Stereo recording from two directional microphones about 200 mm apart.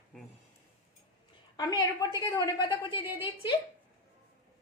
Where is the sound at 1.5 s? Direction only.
20° left (ahead or behind).